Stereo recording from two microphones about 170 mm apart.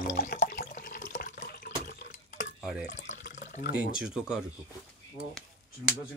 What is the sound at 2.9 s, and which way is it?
Water, 45° left (ahead or behind).